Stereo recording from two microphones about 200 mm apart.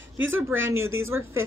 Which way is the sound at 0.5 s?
75° right (ahead or behind).